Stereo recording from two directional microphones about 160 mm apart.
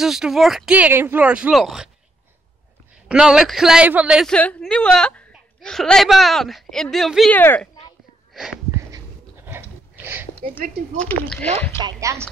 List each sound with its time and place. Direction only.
0.0 s speech: centre (ahead or behind)
3.1 s speech: 5° right (ahead or behind)
4.3 s a woman's voice: 5° left (ahead or behind)
7.3 s a woman's voice: 10° left (ahead or behind)
8.3 s a sound: 5° right (ahead or behind)
11.0 s a woman's voice: 5° left (ahead or behind)
11.8 s speech: 20° right (ahead or behind)